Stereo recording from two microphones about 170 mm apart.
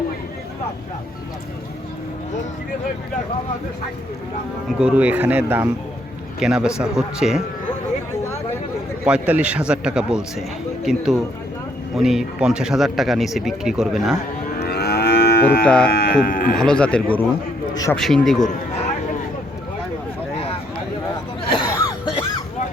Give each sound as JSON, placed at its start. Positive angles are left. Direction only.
{"t": 4.8, "sound": "speech", "side_deg": -5}
{"t": 9.0, "sound": "speech", "side_deg": -5}
{"t": 14.6, "sound": "livestock", "side_deg": 70}
{"t": 15.6, "sound": "speech", "side_deg": 5}
{"t": 15.9, "sound": "speech", "side_deg": 65}
{"t": 16.6, "sound": "speech", "side_deg": 5}
{"t": 20.3, "sound": "a sound", "side_deg": 35}
{"t": 21.5, "sound": "cough", "side_deg": 25}